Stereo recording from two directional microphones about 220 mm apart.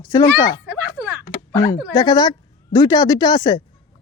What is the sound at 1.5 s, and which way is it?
A woman's voice, 15° left (ahead or behind).